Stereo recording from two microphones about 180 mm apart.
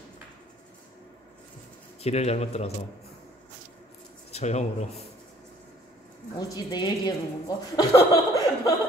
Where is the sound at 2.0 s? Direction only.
35° left (ahead or behind).